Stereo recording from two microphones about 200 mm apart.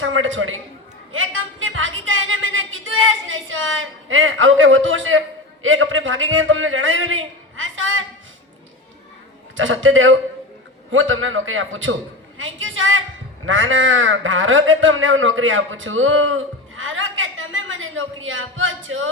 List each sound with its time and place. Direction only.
0.0 s speech: 85° right
1.1 s a sound: 85° right
5.6 s a man's voice: 80° right
9.6 s a man's voice: 80° right